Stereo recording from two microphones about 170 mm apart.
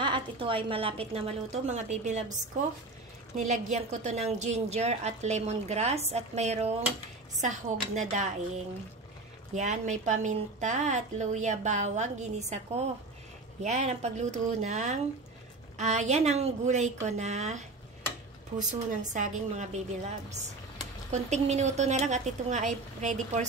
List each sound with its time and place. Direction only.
0.0 s a woman's voice: 30° right (ahead or behind)
3.3 s a woman's voice: 45° right (ahead or behind)
9.6 s a woman's voice: 45° right (ahead or behind)
18.7 s a woman's voice: 45° right (ahead or behind)